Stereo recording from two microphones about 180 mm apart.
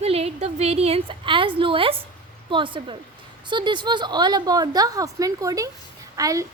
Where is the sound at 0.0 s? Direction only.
35° right (ahead or behind).